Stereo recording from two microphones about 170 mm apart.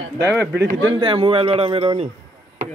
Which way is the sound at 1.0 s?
30° right (ahead or behind).